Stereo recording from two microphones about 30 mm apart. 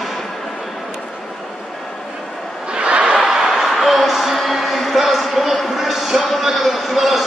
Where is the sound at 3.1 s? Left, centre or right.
Centre.